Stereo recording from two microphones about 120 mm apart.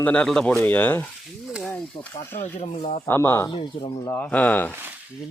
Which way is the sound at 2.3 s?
75° left (ahead or behind).